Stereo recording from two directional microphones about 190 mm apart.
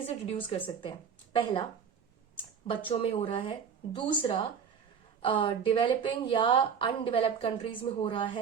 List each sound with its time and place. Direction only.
0.3 s a woman's voice: 30° left (ahead or behind)